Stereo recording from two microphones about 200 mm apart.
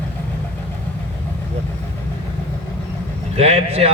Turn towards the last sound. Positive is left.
turn(degrees=-30)  # may be behind; listen again after turning